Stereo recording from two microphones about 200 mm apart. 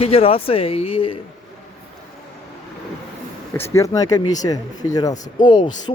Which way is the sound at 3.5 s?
15° left (ahead or behind).